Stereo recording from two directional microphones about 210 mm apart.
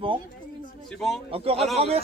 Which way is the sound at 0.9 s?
Centre (ahead or behind).